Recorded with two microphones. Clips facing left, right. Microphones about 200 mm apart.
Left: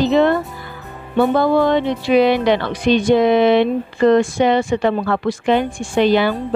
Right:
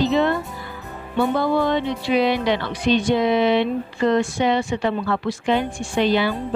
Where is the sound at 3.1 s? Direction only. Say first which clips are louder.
Left 7 dB; 55° left (ahead or behind).